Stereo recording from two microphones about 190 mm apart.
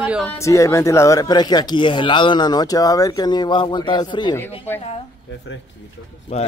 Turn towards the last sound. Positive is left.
turn(degrees=35)  # may be behind; listen again after turning